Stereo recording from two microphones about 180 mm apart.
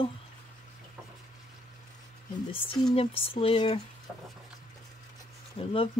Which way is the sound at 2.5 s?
30° left (ahead or behind).